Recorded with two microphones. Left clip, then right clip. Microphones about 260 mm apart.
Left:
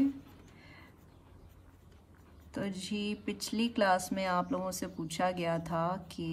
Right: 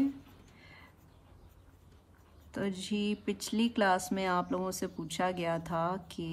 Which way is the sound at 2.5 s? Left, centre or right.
Right.